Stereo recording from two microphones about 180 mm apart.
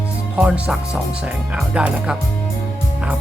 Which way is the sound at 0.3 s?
5° right (ahead or behind).